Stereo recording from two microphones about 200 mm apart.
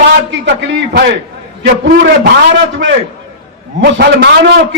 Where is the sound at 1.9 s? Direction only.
55° right (ahead or behind).